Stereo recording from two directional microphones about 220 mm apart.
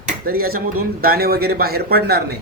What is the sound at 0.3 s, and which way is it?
Speech, 45° right (ahead or behind).